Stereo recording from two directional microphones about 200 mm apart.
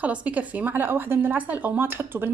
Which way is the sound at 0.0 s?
5° right (ahead or behind).